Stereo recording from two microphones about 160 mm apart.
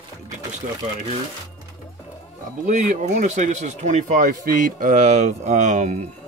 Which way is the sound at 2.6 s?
50° right (ahead or behind).